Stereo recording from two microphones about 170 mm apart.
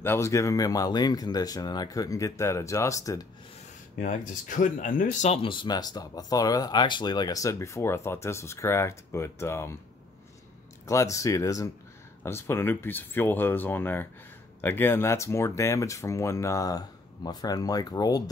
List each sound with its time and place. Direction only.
0.0 s speech: 15° left (ahead or behind)
4.0 s speech: 50° left (ahead or behind); by 9.8 s 15° left (ahead or behind)
10.9 s speech: 20° left (ahead or behind)